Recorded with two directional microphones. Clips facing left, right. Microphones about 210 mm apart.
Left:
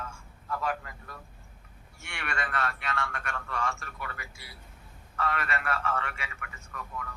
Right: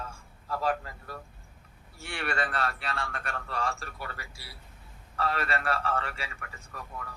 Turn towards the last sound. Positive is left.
turn(degrees=-35)  # may be behind; listen again after turning